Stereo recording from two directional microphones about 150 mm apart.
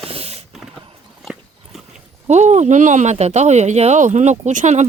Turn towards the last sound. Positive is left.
turn(degrees=-50)  # may be behind; listen again after turning